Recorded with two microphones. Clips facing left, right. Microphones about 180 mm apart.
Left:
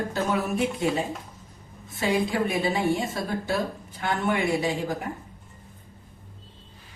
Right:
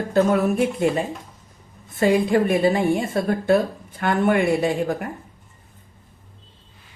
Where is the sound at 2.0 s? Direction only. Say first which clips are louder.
Right 7 dB; 55° right (ahead or behind).